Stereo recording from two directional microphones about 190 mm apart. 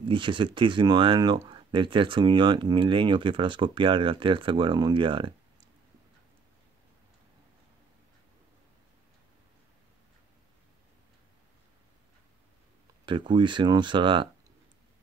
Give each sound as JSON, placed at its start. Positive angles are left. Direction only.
{"t": 0.0, "sound": "speech", "side_deg": -25}
{"t": 13.0, "sound": "speech", "side_deg": -25}